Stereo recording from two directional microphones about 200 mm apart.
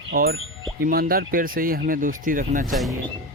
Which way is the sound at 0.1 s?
50° right (ahead or behind).